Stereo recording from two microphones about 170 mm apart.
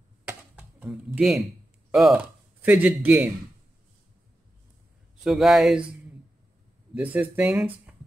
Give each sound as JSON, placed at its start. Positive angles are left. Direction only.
{"t": 0.2, "sound": "computer keyboard", "side_deg": -10}
{"t": 1.9, "sound": "speech", "side_deg": -5}
{"t": 5.2, "sound": "speech", "side_deg": 0}
{"t": 7.0, "sound": "speech", "side_deg": -10}